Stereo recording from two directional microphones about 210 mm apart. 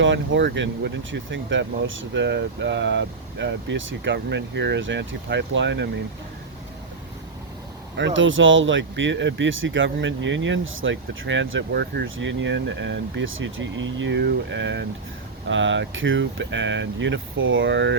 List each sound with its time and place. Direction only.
0.0 s speech: 60° right (ahead or behind)
7.9 s speech: 60° right (ahead or behind)